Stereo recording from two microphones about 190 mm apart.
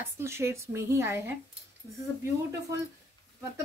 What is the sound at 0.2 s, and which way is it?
A woman's voice, 15° right (ahead or behind).